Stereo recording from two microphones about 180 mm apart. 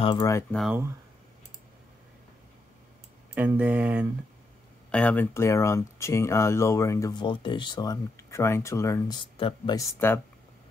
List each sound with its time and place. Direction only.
0.0 s speech: 25° left (ahead or behind)
3.3 s speech: 10° right (ahead or behind)
4.9 s speech: 10° left (ahead or behind); by 9.8 s 25° left (ahead or behind)
9.9 s speech: 15° left (ahead or behind)